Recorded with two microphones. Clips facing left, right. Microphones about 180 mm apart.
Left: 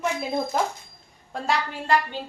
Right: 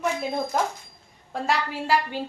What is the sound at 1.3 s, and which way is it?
Speech, centre (ahead or behind).